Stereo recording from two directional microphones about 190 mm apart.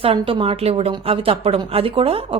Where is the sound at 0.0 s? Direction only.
30° right (ahead or behind).